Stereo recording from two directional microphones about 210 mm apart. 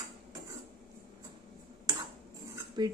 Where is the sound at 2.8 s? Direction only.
20° right (ahead or behind).